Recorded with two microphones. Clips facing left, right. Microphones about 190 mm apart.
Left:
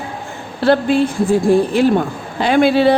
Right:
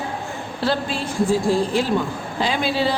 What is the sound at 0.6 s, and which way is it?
A woman's voice, 60° left (ahead or behind).